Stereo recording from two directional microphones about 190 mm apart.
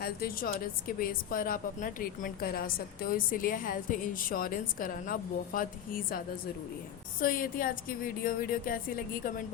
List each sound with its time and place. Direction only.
0.0 s a woman's voice: 50° left (ahead or behind)